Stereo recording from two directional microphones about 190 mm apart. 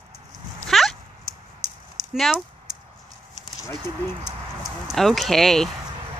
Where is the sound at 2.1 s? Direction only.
Centre (ahead or behind).